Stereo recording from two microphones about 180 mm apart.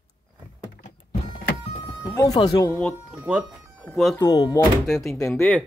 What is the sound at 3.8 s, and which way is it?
Speech, 5° left (ahead or behind).